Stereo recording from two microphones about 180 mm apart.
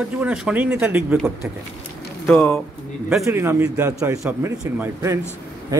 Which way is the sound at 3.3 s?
15° right (ahead or behind).